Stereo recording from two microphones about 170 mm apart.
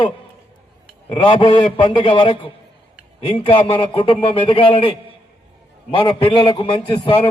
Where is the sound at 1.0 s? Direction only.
30° left (ahead or behind).